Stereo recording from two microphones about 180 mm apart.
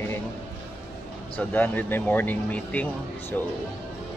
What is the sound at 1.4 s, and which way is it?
Speech, 10° left (ahead or behind).